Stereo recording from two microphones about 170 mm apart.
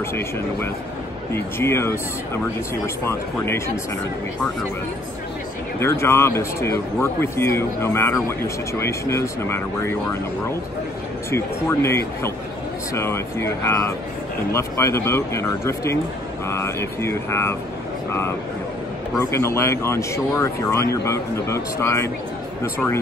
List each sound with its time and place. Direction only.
1.3 s speech: 15° left (ahead or behind)
5.8 s speech: 15° left (ahead or behind)
11.2 s speech: 15° left (ahead or behind)
19.1 s speech: 15° left (ahead or behind)